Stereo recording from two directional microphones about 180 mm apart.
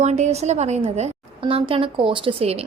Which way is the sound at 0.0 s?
40° right (ahead or behind).